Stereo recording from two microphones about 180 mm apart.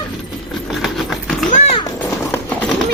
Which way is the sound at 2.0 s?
10° left (ahead or behind).